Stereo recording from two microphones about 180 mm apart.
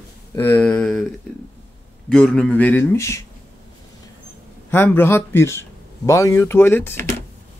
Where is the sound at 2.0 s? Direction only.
5° left (ahead or behind).